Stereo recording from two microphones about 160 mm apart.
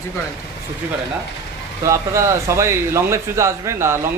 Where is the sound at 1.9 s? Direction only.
20° right (ahead or behind).